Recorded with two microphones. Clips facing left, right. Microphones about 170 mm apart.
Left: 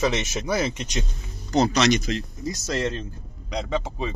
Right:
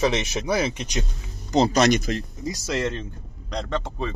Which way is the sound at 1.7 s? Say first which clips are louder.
Right 2 dB; 50° right (ahead or behind).